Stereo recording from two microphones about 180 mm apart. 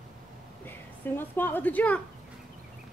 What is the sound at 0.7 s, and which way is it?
A woman's voice, 10° left (ahead or behind).